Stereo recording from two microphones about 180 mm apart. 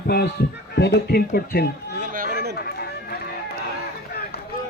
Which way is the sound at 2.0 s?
50° right (ahead or behind).